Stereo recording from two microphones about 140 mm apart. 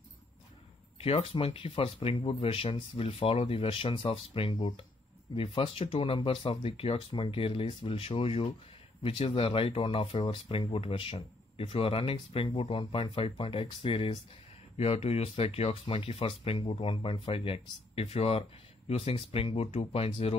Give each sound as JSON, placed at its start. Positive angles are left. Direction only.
{"t": 0.9, "sound": "speech", "side_deg": 45}